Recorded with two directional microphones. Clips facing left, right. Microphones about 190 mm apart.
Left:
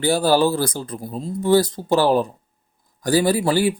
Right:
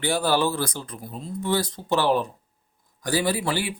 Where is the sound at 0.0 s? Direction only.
35° left (ahead or behind).